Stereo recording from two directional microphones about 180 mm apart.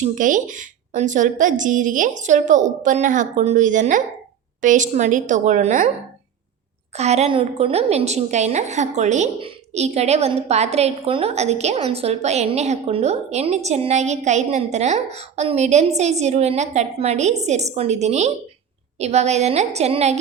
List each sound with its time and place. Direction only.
0.0 s a woman's voice: 45° right (ahead or behind)
6.9 s a woman's voice: 35° right (ahead or behind)